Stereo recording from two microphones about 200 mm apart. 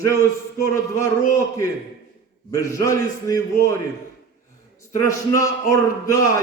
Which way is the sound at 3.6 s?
50° left (ahead or behind).